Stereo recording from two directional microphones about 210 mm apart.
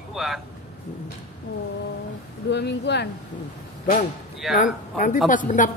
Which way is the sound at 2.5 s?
55° left (ahead or behind).